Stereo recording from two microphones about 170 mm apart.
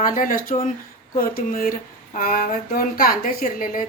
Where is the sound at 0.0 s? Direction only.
55° left (ahead or behind).